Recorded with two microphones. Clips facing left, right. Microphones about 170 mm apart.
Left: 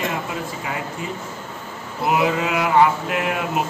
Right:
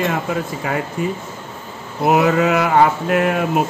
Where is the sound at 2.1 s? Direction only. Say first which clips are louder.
Right 5 dB; 50° right (ahead or behind).